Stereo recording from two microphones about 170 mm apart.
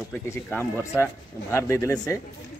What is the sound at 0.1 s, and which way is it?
Speech, 15° left (ahead or behind).